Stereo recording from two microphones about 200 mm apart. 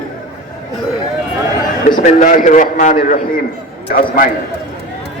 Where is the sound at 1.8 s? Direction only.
40° left (ahead or behind).